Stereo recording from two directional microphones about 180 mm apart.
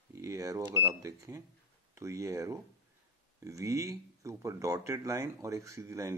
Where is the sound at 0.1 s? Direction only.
15° right (ahead or behind).